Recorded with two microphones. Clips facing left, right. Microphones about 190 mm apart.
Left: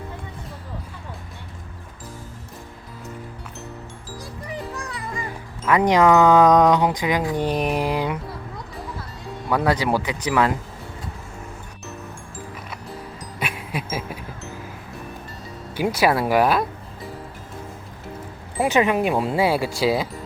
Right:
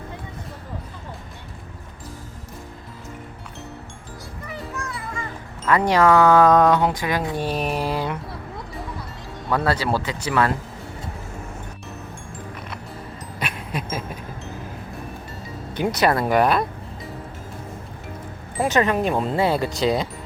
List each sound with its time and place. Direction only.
4.4 s music: 15° left (ahead or behind)
5.6 s speech: 15° left (ahead or behind)
9.5 s speech: 15° left (ahead or behind)
13.4 s a sound: 5° left (ahead or behind)
15.7 s speech: 5° left (ahead or behind)
18.6 s speech: 10° left (ahead or behind)